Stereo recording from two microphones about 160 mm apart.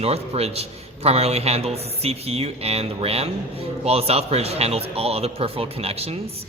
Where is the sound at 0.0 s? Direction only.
40° right (ahead or behind).